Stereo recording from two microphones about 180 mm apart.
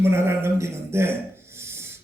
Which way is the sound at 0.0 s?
15° right (ahead or behind).